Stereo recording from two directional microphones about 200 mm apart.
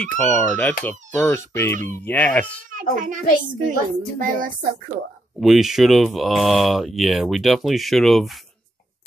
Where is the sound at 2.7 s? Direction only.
40° right (ahead or behind).